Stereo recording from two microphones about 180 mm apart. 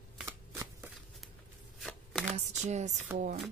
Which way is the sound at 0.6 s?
15° right (ahead or behind).